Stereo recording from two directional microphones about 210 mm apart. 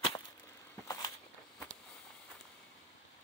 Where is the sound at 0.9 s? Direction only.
15° left (ahead or behind).